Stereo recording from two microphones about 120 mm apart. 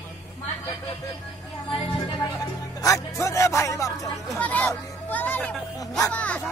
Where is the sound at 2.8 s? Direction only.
25° left (ahead or behind).